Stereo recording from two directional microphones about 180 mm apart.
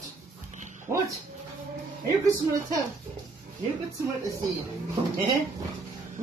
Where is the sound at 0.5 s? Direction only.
45° right (ahead or behind).